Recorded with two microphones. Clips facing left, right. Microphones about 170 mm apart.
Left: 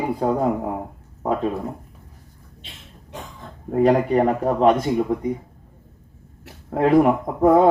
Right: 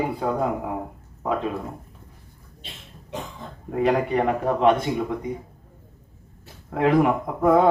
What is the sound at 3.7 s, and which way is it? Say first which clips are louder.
Speech: left 4 dB; 40° left (ahead or behind).